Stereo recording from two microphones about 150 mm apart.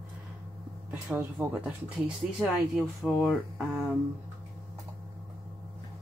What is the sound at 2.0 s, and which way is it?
Dishes, 5° right (ahead or behind).